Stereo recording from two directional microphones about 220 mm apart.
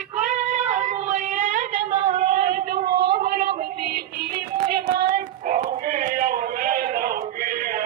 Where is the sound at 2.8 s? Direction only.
50° right (ahead or behind).